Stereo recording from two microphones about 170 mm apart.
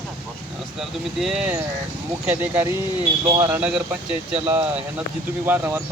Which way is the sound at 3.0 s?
30° right (ahead or behind).